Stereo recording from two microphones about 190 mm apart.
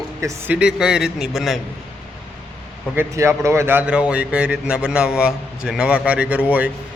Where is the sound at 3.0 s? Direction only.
15° right (ahead or behind).